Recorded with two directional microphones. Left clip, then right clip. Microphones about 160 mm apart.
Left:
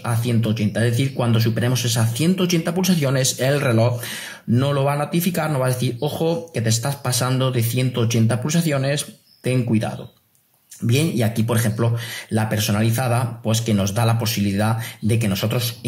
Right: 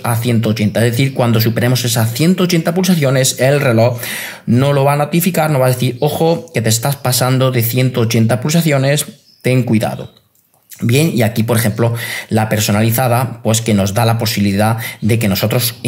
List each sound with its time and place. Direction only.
0.0 s speech: 25° right (ahead or behind)